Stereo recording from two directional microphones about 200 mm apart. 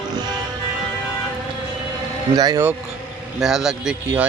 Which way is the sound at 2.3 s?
20° right (ahead or behind).